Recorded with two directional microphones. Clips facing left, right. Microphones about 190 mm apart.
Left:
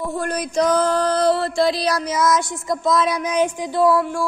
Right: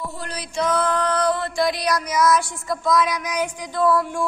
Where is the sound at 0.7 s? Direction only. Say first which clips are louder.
Left 2 dB; 35° left (ahead or behind).